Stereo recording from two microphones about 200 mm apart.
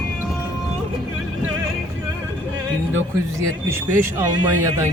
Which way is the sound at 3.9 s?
10° right (ahead or behind).